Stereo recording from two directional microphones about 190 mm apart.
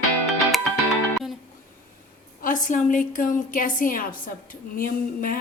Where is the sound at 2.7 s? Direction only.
45° left (ahead or behind).